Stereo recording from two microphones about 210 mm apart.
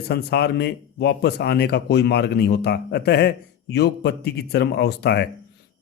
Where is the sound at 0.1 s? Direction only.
50° left (ahead or behind).